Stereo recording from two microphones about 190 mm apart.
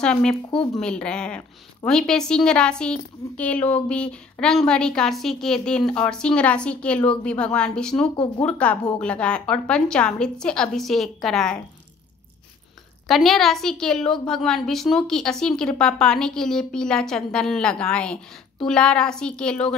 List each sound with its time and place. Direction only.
0.0 s a woman's voice: 5° left (ahead or behind)
13.1 s a woman's voice: centre (ahead or behind)